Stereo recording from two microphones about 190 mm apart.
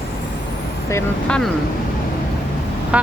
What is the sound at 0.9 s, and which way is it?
Speech, 5° left (ahead or behind).